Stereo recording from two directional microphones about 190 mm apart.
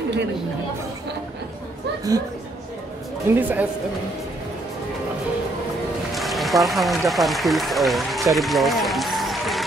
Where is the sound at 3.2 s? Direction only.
10° right (ahead or behind).